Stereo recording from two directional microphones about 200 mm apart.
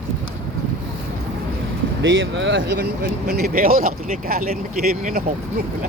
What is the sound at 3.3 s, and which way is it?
Speech, 45° right (ahead or behind).